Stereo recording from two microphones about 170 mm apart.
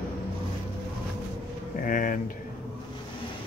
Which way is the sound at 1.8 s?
55° left (ahead or behind).